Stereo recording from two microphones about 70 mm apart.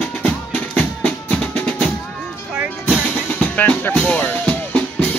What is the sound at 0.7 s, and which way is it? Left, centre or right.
Music, left.